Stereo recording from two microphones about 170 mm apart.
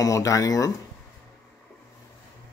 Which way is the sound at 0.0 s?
20° left (ahead or behind).